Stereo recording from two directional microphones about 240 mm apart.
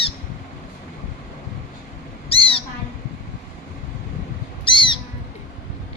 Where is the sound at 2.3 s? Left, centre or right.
Left.